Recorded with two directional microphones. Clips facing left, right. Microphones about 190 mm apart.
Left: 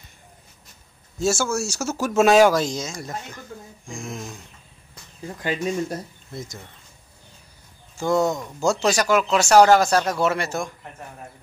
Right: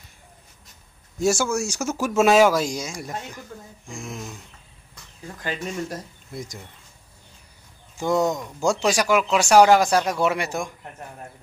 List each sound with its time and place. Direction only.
1.2 s speech: 15° right (ahead or behind)
5.3 s speech: 15° left (ahead or behind)
8.0 s speech: 15° right (ahead or behind)